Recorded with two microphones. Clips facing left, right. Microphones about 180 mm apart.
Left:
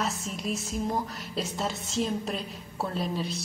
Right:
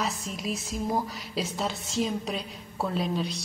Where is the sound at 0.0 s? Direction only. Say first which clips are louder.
Even; centre (ahead or behind).